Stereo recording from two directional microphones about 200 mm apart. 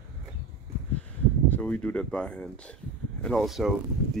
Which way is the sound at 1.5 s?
5° left (ahead or behind).